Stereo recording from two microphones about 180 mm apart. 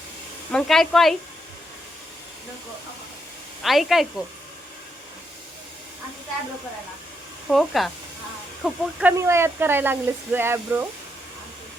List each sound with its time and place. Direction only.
0.5 s speech: centre (ahead or behind)
3.6 s speech: centre (ahead or behind)
7.5 s speech: centre (ahead or behind)